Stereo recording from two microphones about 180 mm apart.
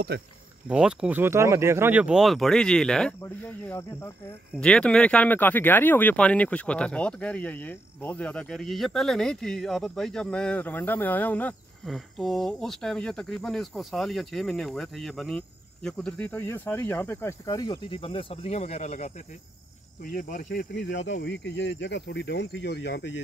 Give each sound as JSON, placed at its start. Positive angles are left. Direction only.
{"t": 0.1, "sound": "cricket", "side_deg": -65}
{"t": 0.7, "sound": "speech", "side_deg": -5}
{"t": 20.0, "sound": "cricket", "side_deg": 50}
{"t": 20.7, "sound": "speech", "side_deg": 75}